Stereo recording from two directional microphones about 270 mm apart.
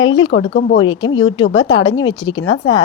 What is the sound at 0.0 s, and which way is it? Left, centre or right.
A woman's voice, centre.